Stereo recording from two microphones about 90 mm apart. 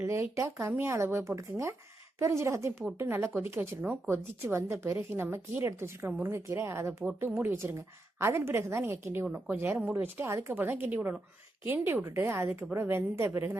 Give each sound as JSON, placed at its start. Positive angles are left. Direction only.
{"t": 0.0, "sound": "speech", "side_deg": -30}